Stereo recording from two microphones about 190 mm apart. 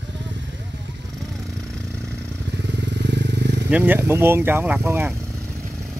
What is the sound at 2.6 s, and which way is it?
Motorcycle, 65° right (ahead or behind).